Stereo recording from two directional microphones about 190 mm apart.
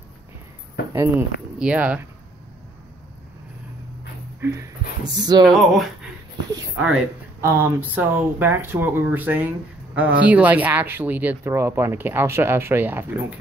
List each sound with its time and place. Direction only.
0.9 s speech: 10° right (ahead or behind)
4.4 s speech: 15° right (ahead or behind)
5.4 s speech: centre (ahead or behind)
6.5 s speech: 15° right (ahead or behind)